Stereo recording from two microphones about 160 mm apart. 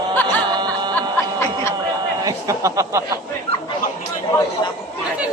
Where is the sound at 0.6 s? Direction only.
25° right (ahead or behind).